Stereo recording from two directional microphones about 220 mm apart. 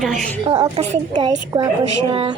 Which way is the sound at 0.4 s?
15° right (ahead or behind).